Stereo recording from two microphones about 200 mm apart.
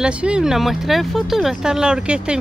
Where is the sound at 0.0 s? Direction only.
5° right (ahead or behind).